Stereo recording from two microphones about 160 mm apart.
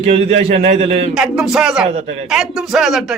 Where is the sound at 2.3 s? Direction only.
Centre (ahead or behind).